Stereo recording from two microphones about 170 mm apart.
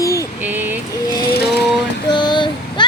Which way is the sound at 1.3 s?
70° left (ahead or behind).